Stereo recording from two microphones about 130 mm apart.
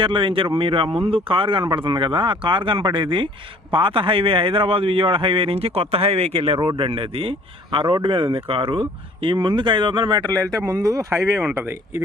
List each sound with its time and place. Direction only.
0.0 s a man's voice: 40° right (ahead or behind); by 12.0 s 20° right (ahead or behind)